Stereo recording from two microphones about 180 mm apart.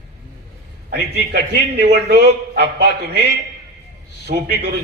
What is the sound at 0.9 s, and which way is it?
Speech, 65° right (ahead or behind).